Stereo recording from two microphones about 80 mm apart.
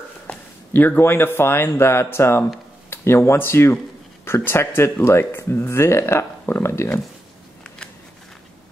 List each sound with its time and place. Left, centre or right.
0.3 s speech: left